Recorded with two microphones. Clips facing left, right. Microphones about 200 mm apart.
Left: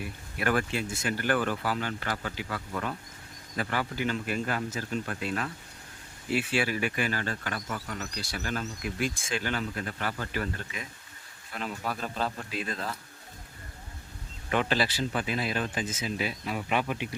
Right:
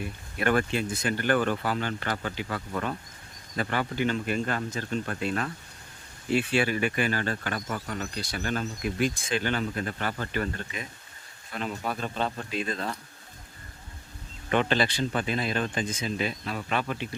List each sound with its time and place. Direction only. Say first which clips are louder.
0.0 s speech: right 3 dB; 5° left (ahead or behind)
3.6 s speech: right 3 dB; 5° left (ahead or behind)
7.1 s speech: right 3 dB; 55° right (ahead or behind)
7.4 s speech: right 3 dB; 35° right (ahead or behind)
8.1 s speech: right 3 dB; centre (ahead or behind)
14.5 s speech: right 3 dB; 5° left (ahead or behind)